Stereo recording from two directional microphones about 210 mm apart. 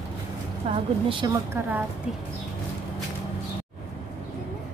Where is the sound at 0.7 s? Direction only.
25° right (ahead or behind).